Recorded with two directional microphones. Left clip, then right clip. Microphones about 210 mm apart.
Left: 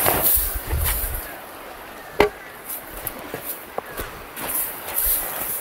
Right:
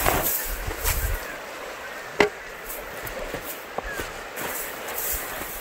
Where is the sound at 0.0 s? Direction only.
45° left (ahead or behind).